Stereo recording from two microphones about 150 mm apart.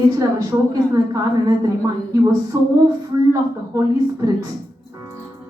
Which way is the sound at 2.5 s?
20° right (ahead or behind).